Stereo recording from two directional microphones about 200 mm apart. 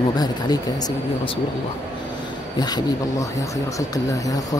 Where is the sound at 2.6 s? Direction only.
20° left (ahead or behind).